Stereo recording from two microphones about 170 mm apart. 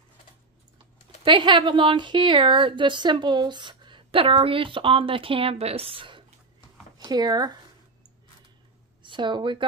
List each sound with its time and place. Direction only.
1.2 s a woman's voice: 30° right (ahead or behind)
9.0 s speech: 25° right (ahead or behind)